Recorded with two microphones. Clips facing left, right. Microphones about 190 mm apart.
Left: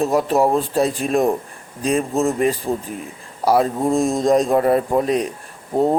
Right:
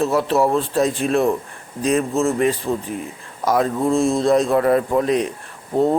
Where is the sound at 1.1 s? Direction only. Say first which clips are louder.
Even; 40° left (ahead or behind).